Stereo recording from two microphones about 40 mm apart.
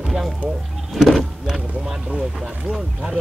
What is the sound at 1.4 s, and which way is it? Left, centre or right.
Vehicle, centre.